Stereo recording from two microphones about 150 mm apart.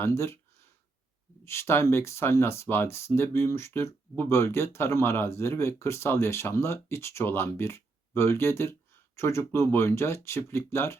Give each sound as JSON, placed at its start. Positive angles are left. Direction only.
{"t": 0.0, "sound": "speech", "side_deg": 15}
{"t": 1.5, "sound": "speech", "side_deg": 15}